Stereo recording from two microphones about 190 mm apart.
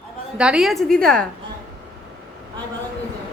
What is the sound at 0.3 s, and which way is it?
Speech, 5° right (ahead or behind).